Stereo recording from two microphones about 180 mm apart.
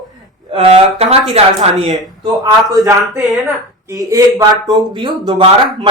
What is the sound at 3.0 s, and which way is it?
Speech, centre (ahead or behind).